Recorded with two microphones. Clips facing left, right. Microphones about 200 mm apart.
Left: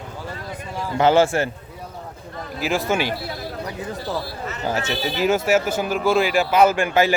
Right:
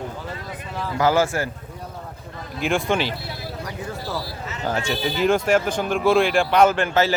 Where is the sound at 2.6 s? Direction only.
5° left (ahead or behind).